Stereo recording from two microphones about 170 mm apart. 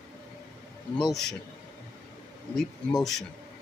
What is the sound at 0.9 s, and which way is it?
Speech, centre (ahead or behind).